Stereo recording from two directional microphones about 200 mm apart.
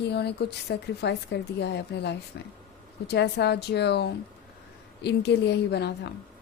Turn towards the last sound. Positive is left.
turn(degrees=55)  # may be behind; listen again after turning